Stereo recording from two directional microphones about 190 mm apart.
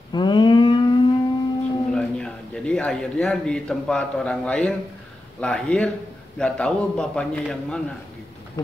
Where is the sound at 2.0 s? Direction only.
5° left (ahead or behind).